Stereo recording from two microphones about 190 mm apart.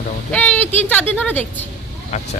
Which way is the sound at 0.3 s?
5° left (ahead or behind).